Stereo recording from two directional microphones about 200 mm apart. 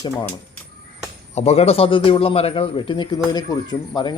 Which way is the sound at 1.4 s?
30° left (ahead or behind).